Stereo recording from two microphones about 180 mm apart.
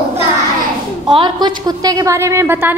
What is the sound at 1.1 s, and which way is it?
A woman's voice, 25° right (ahead or behind).